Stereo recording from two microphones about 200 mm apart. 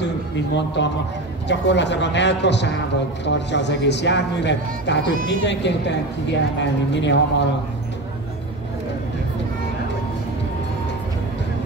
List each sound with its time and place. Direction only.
0.8 s speech: 60° left (ahead or behind)